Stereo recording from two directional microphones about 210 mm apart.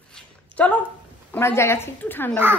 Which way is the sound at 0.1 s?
5° left (ahead or behind).